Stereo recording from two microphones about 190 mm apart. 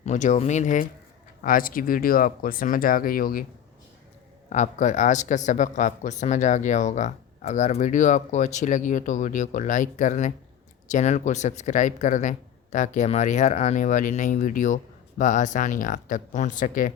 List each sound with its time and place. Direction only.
0.0 s speech: 40° left (ahead or behind)
4.4 s speech: 40° left (ahead or behind)